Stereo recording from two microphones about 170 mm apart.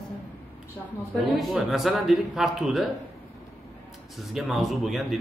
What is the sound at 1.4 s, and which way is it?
A man's voice, centre (ahead or behind).